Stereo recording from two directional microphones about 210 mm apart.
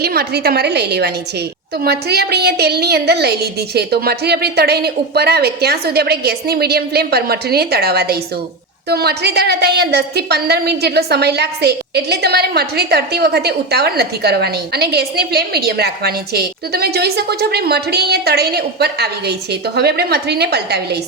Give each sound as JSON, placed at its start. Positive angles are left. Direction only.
{"t": 0.0, "sound": "a woman's voice", "side_deg": -50}